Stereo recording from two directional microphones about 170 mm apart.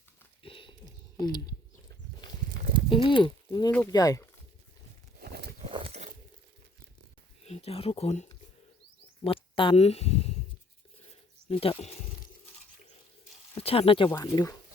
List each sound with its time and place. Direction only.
0.4 s a sound: 30° left (ahead or behind)
2.9 s speech: 30° left (ahead or behind)
3.7 s speech: 10° left (ahead or behind)
3.9 s speech: 20° left (ahead or behind)
5.2 s walk: 75° right (ahead or behind)
5.5 s a sound: 35° right (ahead or behind)
7.4 s speech: 35° left (ahead or behind)
11.1 s a sound: 35° left (ahead or behind)
13.6 s speech: 35° left (ahead or behind)
14.1 s speech: 20° left (ahead or behind)